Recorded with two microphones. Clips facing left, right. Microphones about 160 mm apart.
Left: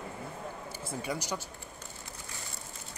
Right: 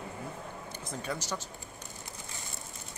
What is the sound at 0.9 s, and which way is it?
Speech, 10° left (ahead or behind).